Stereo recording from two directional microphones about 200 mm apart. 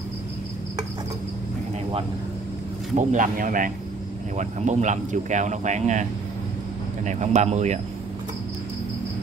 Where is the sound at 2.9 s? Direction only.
40° right (ahead or behind).